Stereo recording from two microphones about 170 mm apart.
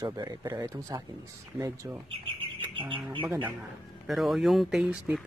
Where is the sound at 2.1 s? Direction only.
30° right (ahead or behind).